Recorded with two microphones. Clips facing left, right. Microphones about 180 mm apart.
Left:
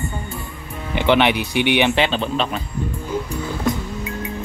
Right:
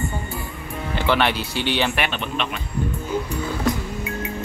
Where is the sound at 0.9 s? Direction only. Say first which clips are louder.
Left 5 dB; 20° left (ahead or behind); by 2.6 s 35° left (ahead or behind).